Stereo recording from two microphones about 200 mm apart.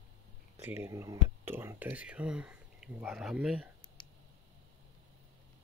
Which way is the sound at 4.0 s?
20° left (ahead or behind).